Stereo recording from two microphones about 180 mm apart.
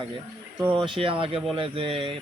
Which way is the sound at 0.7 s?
30° right (ahead or behind).